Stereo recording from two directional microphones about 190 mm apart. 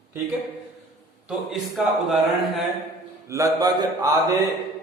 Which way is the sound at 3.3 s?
15° right (ahead or behind).